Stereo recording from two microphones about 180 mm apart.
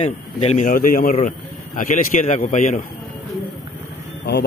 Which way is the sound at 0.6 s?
50° left (ahead or behind).